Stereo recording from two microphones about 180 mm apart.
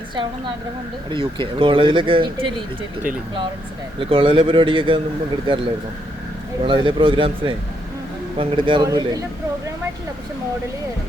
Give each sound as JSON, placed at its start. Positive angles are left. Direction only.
{"t": 1.1, "sound": "speech", "side_deg": -30}
{"t": 4.1, "sound": "speech", "side_deg": -30}
{"t": 6.7, "sound": "speech", "side_deg": -30}